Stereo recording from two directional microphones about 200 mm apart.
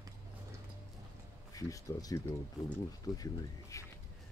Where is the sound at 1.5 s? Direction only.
15° left (ahead or behind).